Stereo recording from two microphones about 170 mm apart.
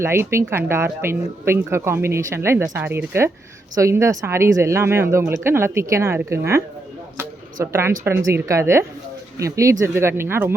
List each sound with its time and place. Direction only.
0.0 s speech: 15° right (ahead or behind)